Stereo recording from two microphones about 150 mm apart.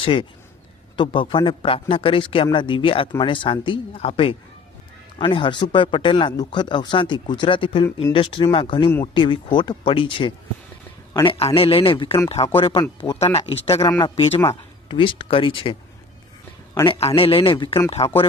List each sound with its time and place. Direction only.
0.0 s a man's voice: 35° left (ahead or behind)
11.3 s speech: 40° left (ahead or behind)
16.8 s speech: 40° left (ahead or behind)